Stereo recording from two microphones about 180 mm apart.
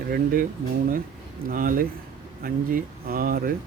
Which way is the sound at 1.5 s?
50° right (ahead or behind).